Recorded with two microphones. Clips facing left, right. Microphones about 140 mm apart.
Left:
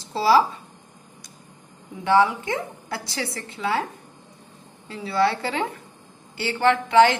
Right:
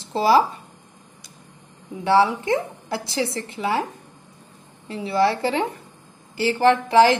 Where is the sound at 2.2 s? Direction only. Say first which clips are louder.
Right 3 dB; 20° right (ahead or behind).